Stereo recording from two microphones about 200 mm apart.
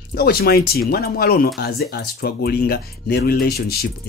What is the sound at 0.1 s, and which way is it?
Speech, 50° left (ahead or behind).